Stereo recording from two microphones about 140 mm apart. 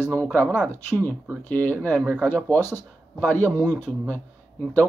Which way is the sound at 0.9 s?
15° left (ahead or behind).